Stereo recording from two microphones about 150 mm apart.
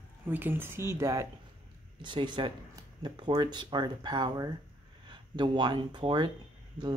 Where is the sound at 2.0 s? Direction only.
30° right (ahead or behind).